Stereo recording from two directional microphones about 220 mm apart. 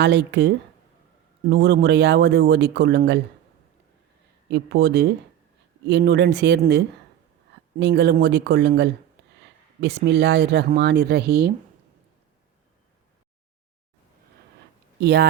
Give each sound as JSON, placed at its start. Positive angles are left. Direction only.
{"t": 0.0, "sound": "speech", "side_deg": -50}
{"t": 4.4, "sound": "speech", "side_deg": -50}
{"t": 15.0, "sound": "speech", "side_deg": -50}